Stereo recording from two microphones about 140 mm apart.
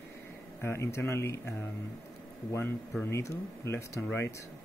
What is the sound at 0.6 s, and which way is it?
Speech, 20° left (ahead or behind).